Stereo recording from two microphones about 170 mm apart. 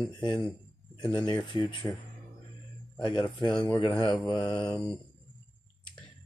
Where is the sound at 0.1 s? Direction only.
25° left (ahead or behind).